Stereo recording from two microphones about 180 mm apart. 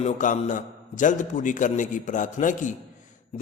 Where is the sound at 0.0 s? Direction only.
45° left (ahead or behind).